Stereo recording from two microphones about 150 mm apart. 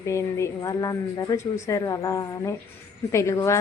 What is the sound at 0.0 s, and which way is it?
A woman's voice, 20° left (ahead or behind).